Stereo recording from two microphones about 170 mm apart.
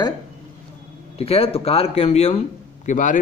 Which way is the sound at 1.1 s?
35° left (ahead or behind).